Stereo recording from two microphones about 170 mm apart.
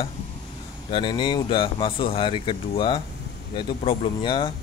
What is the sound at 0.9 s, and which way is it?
Speech, 30° left (ahead or behind).